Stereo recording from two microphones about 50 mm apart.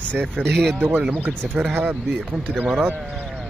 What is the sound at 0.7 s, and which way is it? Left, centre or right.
Speech, right.